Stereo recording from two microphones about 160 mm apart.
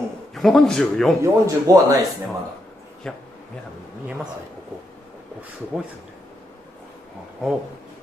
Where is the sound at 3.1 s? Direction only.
5° left (ahead or behind).